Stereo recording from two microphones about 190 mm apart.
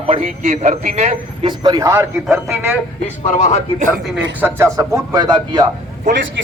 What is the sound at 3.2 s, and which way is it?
Speech, 35° left (ahead or behind).